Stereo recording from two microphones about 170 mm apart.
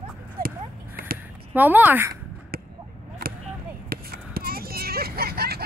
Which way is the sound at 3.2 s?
65° right (ahead or behind).